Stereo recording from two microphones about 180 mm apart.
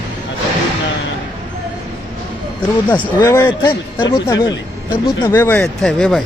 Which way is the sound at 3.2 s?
15° left (ahead or behind).